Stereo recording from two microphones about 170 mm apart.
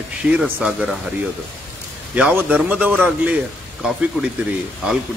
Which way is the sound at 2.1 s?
10° right (ahead or behind).